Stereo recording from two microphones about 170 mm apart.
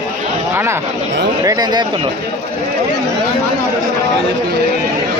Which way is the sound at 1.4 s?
20° right (ahead or behind).